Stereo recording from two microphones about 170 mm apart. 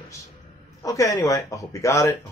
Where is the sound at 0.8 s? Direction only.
20° left (ahead or behind).